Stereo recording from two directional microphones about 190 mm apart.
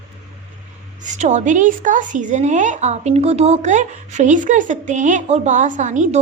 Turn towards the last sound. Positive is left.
turn(degrees=-40)  # may be behind; listen again after turning